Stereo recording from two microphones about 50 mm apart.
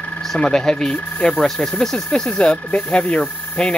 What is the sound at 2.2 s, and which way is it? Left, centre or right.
Speech, left.